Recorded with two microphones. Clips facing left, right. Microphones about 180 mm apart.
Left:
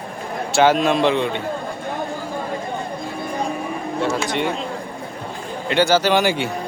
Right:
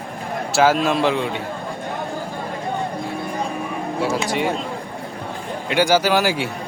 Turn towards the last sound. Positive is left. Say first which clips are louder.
# left 1 dB
turn(degrees=-5)  # may be behind; listen again after turning